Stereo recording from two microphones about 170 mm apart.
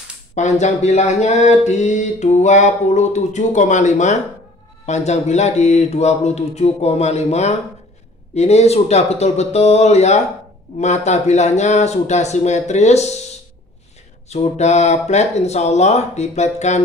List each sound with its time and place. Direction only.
0.3 s a sound: 45° left (ahead or behind)
4.8 s speech: 40° left (ahead or behind)
14.3 s speech: 40° left (ahead or behind)